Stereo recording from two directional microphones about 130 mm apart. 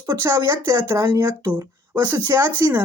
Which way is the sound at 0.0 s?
20° right (ahead or behind).